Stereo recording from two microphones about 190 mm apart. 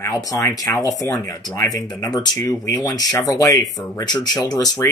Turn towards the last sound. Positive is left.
turn(degrees=20)  # may be behind; listen again after turning